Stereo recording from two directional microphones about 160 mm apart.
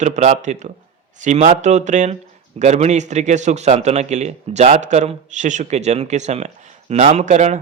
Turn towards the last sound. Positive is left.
turn(degrees=-45)  # may be behind; listen again after turning